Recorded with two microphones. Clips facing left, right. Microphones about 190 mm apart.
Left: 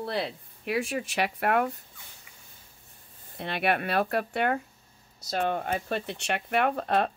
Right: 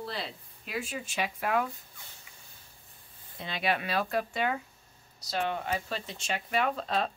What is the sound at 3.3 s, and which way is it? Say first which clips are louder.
Speech: left 4 dB; 60° left (ahead or behind).